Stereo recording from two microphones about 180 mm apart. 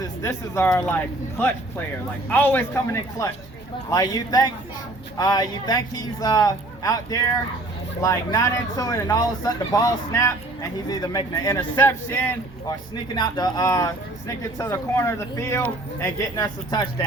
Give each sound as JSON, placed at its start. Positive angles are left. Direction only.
{"t": 0.0, "sound": "speech", "side_deg": 15}
{"t": 13.1, "sound": "speech", "side_deg": 20}